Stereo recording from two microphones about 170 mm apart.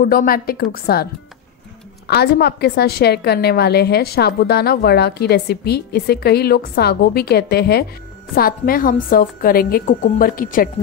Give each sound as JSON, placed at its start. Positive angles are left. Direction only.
{"t": 0.0, "sound": "a woman's voice", "side_deg": 55}
{"t": 2.0, "sound": "a woman's voice", "side_deg": 70}
{"t": 8.4, "sound": "a woman's voice", "side_deg": 60}